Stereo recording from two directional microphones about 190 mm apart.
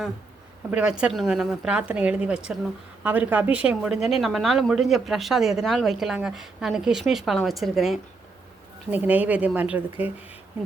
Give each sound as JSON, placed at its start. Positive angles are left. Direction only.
{"t": 0.7, "sound": "a woman's voice", "side_deg": -5}